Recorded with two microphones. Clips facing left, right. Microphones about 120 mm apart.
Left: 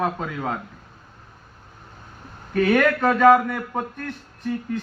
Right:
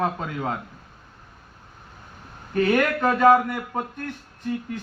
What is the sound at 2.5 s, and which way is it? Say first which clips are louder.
Speech: left 2 dB; 20° right (ahead or behind).